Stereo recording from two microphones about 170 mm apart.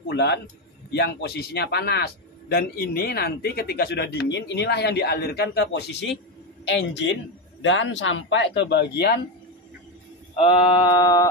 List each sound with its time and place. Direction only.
0.1 s a man's voice: 90° left
0.9 s a man's voice: 75° left (ahead or behind)
10.3 s a sound: 30° left (ahead or behind)